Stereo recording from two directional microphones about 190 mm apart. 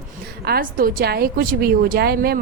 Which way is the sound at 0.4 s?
50° right (ahead or behind).